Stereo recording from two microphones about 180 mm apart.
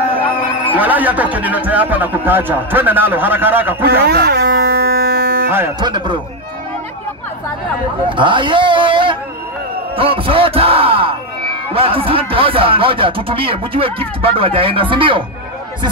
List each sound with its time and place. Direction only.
0.7 s speech: 10° right (ahead or behind)
4.0 s a sound: 65° right (ahead or behind)
5.8 s a man's voice: 25° right (ahead or behind)
8.1 s a man's voice: 25° right (ahead or behind)